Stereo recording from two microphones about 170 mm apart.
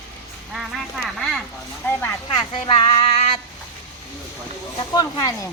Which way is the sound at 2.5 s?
30° left (ahead or behind).